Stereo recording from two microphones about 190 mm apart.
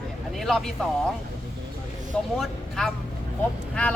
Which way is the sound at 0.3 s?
Centre (ahead or behind).